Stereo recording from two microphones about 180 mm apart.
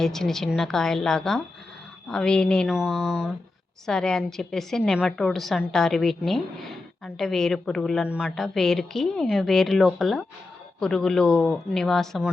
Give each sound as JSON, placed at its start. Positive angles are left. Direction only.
{"t": 0.0, "sound": "a woman's voice", "side_deg": 5}